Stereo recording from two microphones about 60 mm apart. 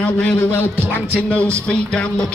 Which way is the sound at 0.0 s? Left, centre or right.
Centre.